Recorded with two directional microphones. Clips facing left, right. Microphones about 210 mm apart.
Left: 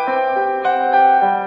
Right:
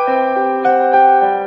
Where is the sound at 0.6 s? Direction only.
45° right (ahead or behind).